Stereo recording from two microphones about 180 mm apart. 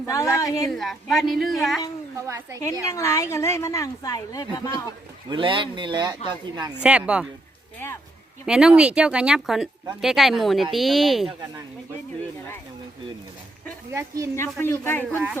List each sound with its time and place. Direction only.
0.0 s a woman's voice: 15° left (ahead or behind)
0.7 s speech: centre (ahead or behind)
2.1 s a woman's voice: 15° right (ahead or behind)
2.8 s a woman's voice: 15° left (ahead or behind)
5.3 s speech: 25° right (ahead or behind)
6.7 s speech: 5° right (ahead or behind)
8.4 s speech: 5° right (ahead or behind)
13.9 s a woman's voice: 15° right (ahead or behind)
14.3 s a woman's voice: 15° left (ahead or behind)